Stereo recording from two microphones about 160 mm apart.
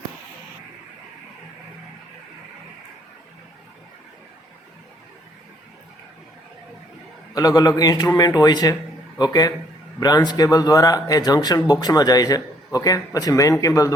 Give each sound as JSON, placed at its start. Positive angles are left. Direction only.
{"t": 7.3, "sound": "a man's voice", "side_deg": 25}